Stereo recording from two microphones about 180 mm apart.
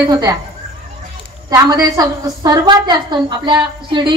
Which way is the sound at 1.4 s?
20° right (ahead or behind).